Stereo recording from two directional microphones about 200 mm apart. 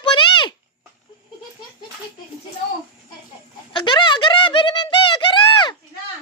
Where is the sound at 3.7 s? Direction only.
25° left (ahead or behind).